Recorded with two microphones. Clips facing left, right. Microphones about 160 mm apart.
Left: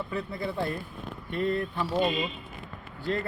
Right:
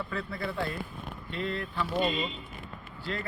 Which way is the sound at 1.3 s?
45° left (ahead or behind).